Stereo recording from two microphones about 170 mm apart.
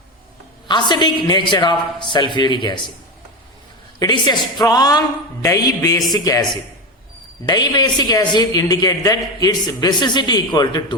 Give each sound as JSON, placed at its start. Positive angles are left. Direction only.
{"t": 0.7, "sound": "speech", "side_deg": 25}
{"t": 4.0, "sound": "speech", "side_deg": 25}